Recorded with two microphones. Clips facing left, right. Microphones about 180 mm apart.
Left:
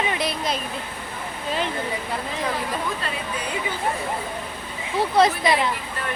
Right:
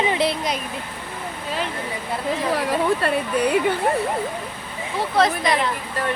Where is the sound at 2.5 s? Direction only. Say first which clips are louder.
Right 7 dB; 60° right (ahead or behind).